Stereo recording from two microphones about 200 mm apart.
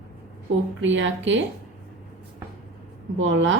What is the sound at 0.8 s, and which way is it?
Speech, 70° right (ahead or behind).